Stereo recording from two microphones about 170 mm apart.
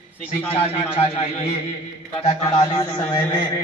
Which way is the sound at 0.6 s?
35° left (ahead or behind).